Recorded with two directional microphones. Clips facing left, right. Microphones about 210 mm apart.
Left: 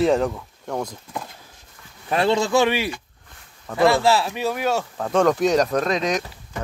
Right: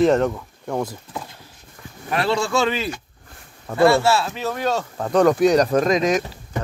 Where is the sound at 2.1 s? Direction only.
20° left (ahead or behind).